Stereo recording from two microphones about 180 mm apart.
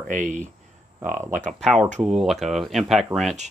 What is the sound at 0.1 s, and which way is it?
Speech, 45° right (ahead or behind).